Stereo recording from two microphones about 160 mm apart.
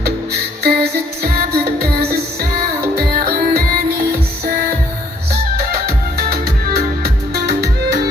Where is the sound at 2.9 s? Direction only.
70° right (ahead or behind).